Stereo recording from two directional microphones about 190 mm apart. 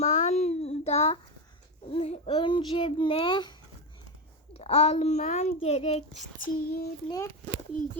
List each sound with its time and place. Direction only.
0.0 s child singing: 40° left (ahead or behind)
1.9 s a child's voice: 35° left (ahead or behind)
4.5 s a child's voice: 35° left (ahead or behind); by 6.8 s 50° left (ahead or behind)
7.1 s a child's voice: 20° left (ahead or behind)